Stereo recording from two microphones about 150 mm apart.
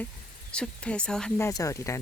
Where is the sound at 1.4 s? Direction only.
20° left (ahead or behind).